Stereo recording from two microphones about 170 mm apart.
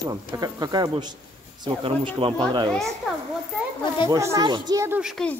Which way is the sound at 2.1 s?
30° right (ahead or behind).